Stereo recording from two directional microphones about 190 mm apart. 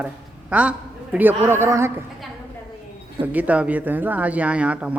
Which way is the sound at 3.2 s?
10° right (ahead or behind).